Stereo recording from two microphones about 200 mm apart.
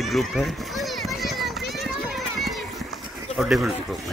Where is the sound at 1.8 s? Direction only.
Centre (ahead or behind).